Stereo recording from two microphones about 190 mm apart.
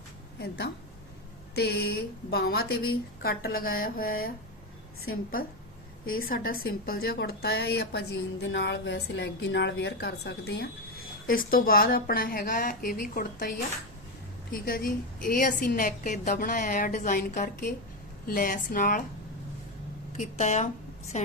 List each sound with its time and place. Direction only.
1.5 s a woman's voice: 60° left (ahead or behind)
14.5 s a woman's voice: 50° left (ahead or behind)
20.1 s speech: 40° left (ahead or behind)